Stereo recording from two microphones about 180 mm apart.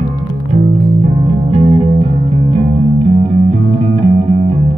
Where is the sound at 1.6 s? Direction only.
35° right (ahead or behind).